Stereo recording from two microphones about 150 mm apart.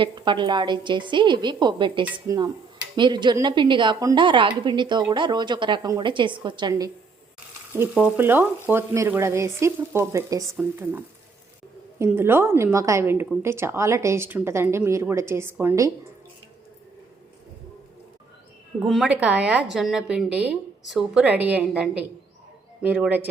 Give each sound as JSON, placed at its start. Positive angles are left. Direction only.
{"t": 0.0, "sound": "a woman's voice", "side_deg": -30}
{"t": 7.7, "sound": "a woman's voice", "side_deg": -10}
{"t": 18.9, "sound": "a woman's voice", "side_deg": -5}
{"t": 22.8, "sound": "a woman's voice", "side_deg": -10}